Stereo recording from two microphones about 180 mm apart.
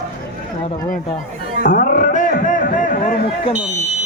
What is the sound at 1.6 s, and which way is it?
Speech, 45° left (ahead or behind).